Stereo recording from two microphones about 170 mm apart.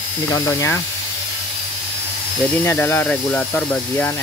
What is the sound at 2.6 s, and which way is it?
Speech, 15° left (ahead or behind).